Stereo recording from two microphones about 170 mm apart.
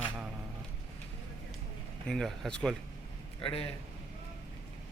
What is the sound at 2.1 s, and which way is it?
Speech, centre (ahead or behind).